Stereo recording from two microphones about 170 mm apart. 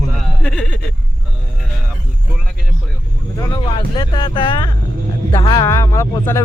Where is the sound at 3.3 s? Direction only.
20° left (ahead or behind).